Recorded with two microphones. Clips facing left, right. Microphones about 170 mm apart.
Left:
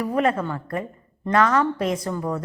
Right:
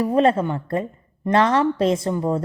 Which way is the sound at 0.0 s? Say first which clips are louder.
Right 4 dB; 30° right (ahead or behind).